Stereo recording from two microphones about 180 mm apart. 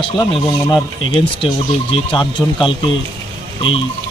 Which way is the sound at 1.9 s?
30° left (ahead or behind).